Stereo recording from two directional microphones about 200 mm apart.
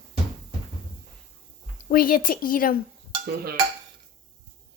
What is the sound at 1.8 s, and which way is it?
Speech, 45° left (ahead or behind).